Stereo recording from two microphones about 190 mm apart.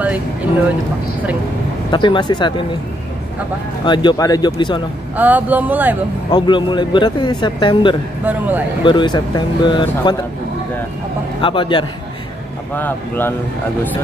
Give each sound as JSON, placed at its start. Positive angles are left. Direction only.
{"t": 1.9, "sound": "speech", "side_deg": 25}
{"t": 3.8, "sound": "speech", "side_deg": 25}
{"t": 5.1, "sound": "speech", "side_deg": -10}
{"t": 6.3, "sound": "speech", "side_deg": 25}
{"t": 8.3, "sound": "speech", "side_deg": -10}
{"t": 8.8, "sound": "speech", "side_deg": 25}
{"t": 11.4, "sound": "speech", "side_deg": 25}
{"t": 12.7, "sound": "speech", "side_deg": 10}